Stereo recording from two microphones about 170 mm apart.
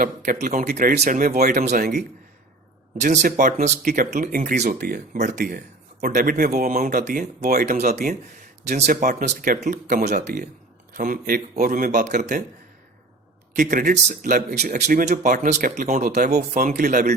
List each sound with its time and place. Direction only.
0.0 s speech: 50° right (ahead or behind)
13.6 s speech: 50° right (ahead or behind)